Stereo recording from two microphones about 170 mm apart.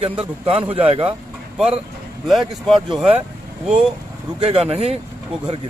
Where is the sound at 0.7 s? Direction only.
35° right (ahead or behind).